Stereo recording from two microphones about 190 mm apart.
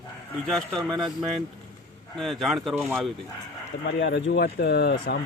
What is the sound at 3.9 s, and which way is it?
Speech, 65° left (ahead or behind).